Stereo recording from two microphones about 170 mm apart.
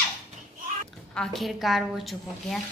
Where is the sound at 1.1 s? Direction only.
Centre (ahead or behind).